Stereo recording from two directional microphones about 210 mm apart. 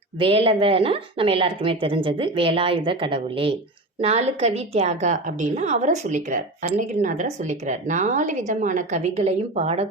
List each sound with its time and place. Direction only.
0.2 s a woman's voice: 25° right (ahead or behind)